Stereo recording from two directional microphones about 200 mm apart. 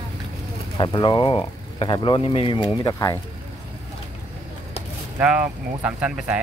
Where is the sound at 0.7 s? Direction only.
25° left (ahead or behind).